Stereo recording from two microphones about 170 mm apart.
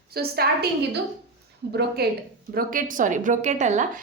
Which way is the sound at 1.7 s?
75° right (ahead or behind).